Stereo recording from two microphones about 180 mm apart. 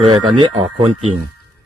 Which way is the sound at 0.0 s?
30° right (ahead or behind).